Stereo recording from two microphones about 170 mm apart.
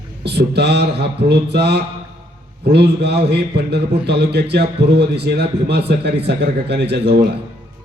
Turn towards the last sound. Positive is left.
turn(degrees=-75)  # may be behind; listen again after turning